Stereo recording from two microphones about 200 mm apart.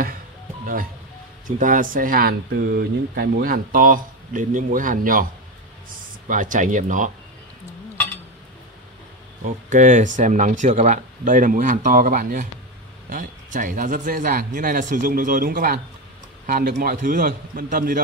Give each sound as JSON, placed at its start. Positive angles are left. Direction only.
{"t": 1.6, "sound": "speech", "side_deg": -40}
{"t": 9.4, "sound": "speech", "side_deg": -40}